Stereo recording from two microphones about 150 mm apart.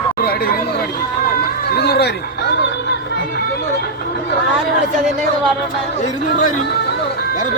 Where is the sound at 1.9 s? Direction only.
90° left.